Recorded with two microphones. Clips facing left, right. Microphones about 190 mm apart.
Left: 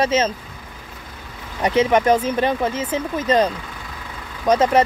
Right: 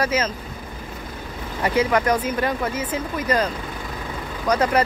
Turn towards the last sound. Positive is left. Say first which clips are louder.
# left 4 dB
turn(degrees=20)  # may be behind; listen again after turning